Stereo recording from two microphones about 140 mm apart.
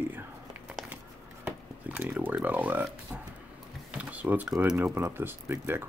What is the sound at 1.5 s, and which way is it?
Speech, 10° right (ahead or behind).